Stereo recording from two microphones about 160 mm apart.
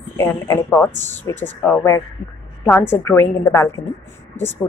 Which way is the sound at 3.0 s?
15° left (ahead or behind).